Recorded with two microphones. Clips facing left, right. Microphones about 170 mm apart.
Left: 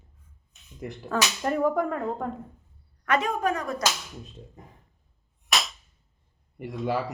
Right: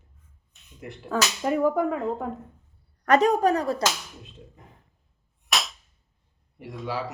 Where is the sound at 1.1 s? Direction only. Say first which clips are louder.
Right 2 dB; 5° right (ahead or behind).